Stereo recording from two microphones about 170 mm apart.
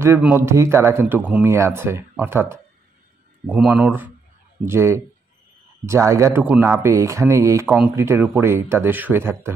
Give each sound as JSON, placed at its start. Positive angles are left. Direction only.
{"t": 0.0, "sound": "speech", "side_deg": -10}